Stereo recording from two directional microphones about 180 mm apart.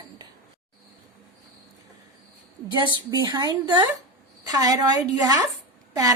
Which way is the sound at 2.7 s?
25° right (ahead or behind).